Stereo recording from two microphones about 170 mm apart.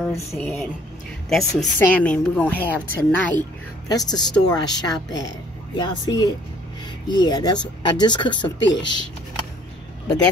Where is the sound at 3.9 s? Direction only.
25° left (ahead or behind).